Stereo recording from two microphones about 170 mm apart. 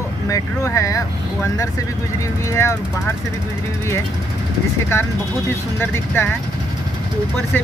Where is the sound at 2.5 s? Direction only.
15° left (ahead or behind).